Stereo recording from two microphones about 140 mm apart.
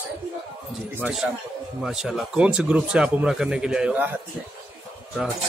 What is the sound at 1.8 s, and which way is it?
Speech, 5° right (ahead or behind).